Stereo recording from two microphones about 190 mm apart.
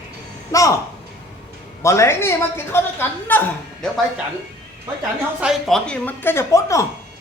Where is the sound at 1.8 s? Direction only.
15° left (ahead or behind).